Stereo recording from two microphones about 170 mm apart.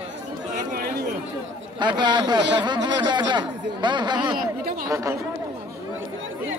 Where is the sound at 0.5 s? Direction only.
60° right (ahead or behind).